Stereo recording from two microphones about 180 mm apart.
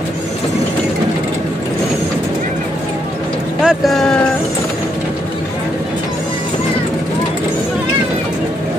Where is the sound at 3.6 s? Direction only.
Centre (ahead or behind).